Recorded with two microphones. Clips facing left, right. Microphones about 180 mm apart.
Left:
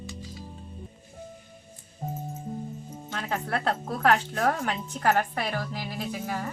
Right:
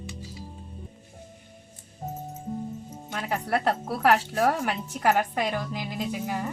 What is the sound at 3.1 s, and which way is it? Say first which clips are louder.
A woman's voice: right 3 dB; 10° right (ahead or behind).